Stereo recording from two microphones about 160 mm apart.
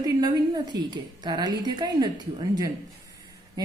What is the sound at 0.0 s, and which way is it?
Speech, 25° right (ahead or behind).